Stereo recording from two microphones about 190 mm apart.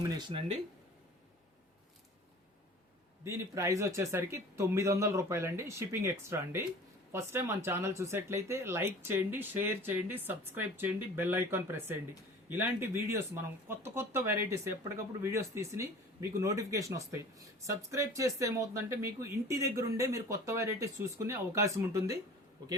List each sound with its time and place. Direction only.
0.2 s speech: 25° right (ahead or behind)
3.2 s speech: 15° right (ahead or behind)